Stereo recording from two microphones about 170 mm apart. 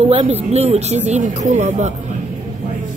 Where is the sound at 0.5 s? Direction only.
40° right (ahead or behind).